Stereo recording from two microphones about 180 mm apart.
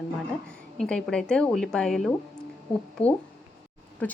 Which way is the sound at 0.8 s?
5° left (ahead or behind).